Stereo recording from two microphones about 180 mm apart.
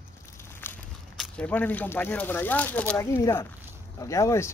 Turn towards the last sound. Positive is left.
turn(degrees=15)  # may be behind; listen again after turning